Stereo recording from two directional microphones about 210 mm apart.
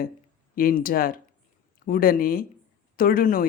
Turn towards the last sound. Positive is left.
turn(degrees=45)  # may be behind; listen again after turning